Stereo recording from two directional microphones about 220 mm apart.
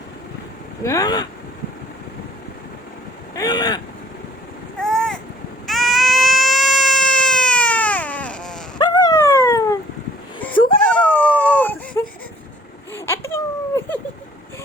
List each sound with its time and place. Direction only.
0.8 s speech: 15° left (ahead or behind)
3.3 s vehicle: 15° left (ahead or behind)
4.8 s vehicle: centre (ahead or behind)
5.6 s baby cry: centre (ahead or behind)
8.8 s dog: 15° left (ahead or behind)
10.8 s baby cry: 5° left (ahead or behind)
12.9 s a sound: 10° left (ahead or behind)